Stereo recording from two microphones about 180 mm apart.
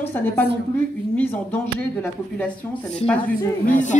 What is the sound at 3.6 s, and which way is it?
Speech, 45° left (ahead or behind).